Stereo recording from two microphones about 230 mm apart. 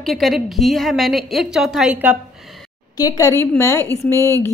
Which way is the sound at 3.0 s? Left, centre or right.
Centre.